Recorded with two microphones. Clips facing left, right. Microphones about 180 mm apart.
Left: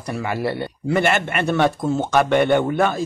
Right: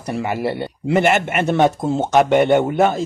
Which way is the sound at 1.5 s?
25° right (ahead or behind).